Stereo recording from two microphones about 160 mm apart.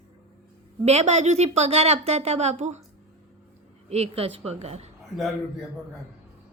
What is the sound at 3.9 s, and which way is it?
A woman's voice, 40° right (ahead or behind).